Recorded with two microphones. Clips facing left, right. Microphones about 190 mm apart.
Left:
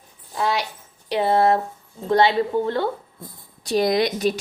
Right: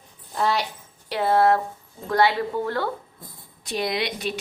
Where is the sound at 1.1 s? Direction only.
20° left (ahead or behind).